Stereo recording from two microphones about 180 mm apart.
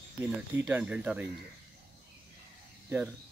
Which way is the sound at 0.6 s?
5° right (ahead or behind).